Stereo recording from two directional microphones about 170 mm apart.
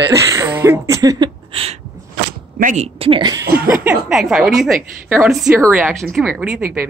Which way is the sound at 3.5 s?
10° right (ahead or behind).